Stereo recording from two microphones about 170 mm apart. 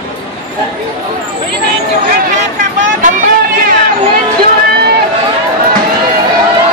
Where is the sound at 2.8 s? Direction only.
50° right (ahead or behind).